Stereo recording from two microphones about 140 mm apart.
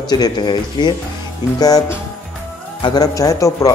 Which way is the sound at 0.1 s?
30° left (ahead or behind).